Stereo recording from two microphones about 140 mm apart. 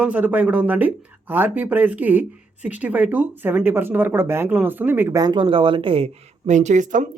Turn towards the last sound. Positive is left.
turn(degrees=-60)  # may be behind; listen again after turning